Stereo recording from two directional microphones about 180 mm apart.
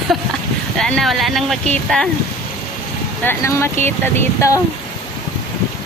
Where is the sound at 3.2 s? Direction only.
15° left (ahead or behind).